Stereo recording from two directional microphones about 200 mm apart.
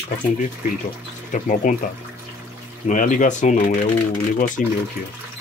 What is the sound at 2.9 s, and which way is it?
Speech, 40° left (ahead or behind).